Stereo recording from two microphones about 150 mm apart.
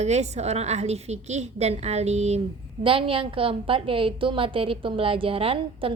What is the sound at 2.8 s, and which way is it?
A woman's voice, 35° right (ahead or behind).